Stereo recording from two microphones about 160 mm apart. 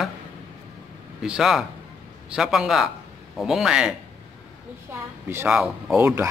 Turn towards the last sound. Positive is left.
turn(degrees=-15)  # may be behind; listen again after turning